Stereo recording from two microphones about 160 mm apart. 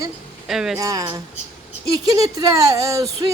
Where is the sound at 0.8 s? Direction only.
20° right (ahead or behind).